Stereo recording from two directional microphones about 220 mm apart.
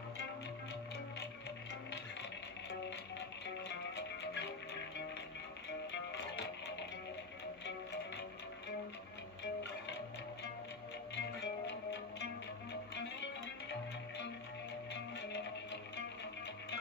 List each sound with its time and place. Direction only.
3.6 s music: 50° left (ahead or behind)
5.9 s music: 55° left (ahead or behind)
9.4 s music: 50° left (ahead or behind)
11.1 s music: 50° left (ahead or behind)